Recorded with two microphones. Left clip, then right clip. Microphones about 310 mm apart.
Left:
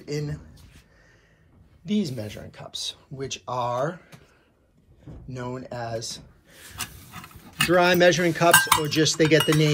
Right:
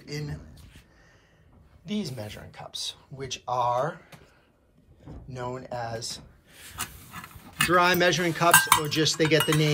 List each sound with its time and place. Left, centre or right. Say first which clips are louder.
0.0 s speech: left 6 dB; centre
1.9 s speech: left 5 dB; centre
5.3 s speech: even; centre